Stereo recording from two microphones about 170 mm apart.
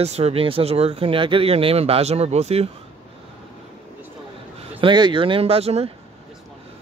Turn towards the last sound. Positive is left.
turn(degrees=-35)  # may be behind; listen again after turning